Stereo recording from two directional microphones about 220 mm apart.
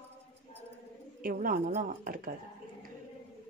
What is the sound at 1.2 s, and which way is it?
Speech, 40° right (ahead or behind).